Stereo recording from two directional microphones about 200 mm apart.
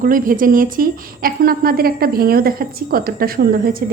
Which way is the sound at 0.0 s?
45° right (ahead or behind).